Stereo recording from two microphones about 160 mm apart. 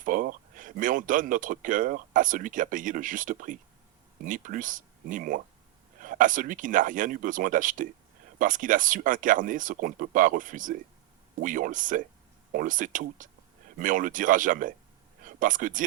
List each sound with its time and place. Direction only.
0.0 s speech: 60° right (ahead or behind)